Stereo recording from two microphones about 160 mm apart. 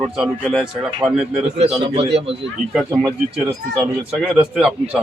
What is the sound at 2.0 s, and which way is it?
Speech, 40° right (ahead or behind).